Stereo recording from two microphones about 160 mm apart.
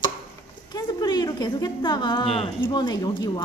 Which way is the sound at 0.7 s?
25° left (ahead or behind).